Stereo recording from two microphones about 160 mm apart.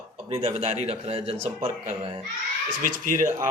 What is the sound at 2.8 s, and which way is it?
Speech, 55° right (ahead or behind).